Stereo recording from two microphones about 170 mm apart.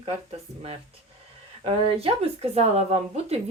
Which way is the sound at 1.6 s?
35° right (ahead or behind).